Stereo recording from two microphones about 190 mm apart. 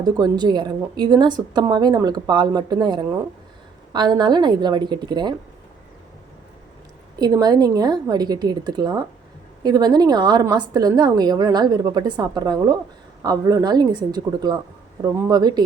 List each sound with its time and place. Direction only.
0.0 s a woman's voice: 20° right (ahead or behind)
7.2 s a woman's voice: 20° right (ahead or behind)